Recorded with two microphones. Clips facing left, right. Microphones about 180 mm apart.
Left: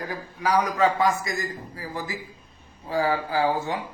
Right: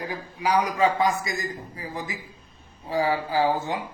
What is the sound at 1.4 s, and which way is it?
A man's voice, 20° right (ahead or behind).